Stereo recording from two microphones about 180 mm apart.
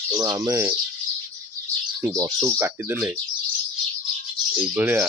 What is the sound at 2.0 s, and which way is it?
Speech, 20° right (ahead or behind).